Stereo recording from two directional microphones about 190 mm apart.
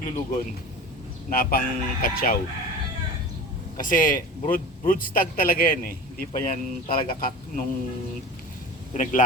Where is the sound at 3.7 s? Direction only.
45° left (ahead or behind).